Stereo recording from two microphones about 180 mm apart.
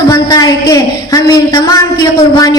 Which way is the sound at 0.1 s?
20° left (ahead or behind).